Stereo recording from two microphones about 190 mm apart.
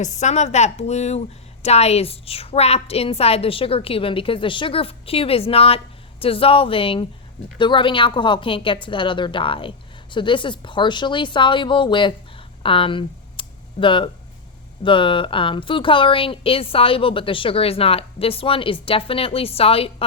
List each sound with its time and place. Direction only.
0.0 s a woman's voice: 40° left (ahead or behind)
12.6 s a sound: 30° left (ahead or behind)
14.8 s a woman's voice: 25° left (ahead or behind)